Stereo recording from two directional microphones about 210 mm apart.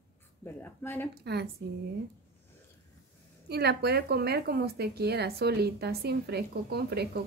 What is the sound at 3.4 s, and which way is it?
Speech, 50° right (ahead or behind).